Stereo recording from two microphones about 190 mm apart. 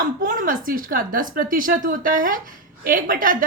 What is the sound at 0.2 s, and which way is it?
A woman's voice, 45° right (ahead or behind).